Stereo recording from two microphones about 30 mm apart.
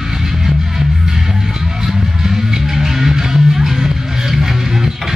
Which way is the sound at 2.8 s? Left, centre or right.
Centre.